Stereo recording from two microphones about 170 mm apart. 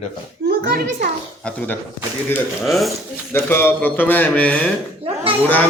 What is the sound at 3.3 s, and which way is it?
Speech, 15° left (ahead or behind).